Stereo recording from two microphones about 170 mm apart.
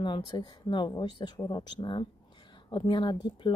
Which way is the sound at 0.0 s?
30° left (ahead or behind).